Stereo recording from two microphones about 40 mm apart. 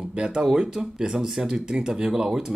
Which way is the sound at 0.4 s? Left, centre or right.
Centre.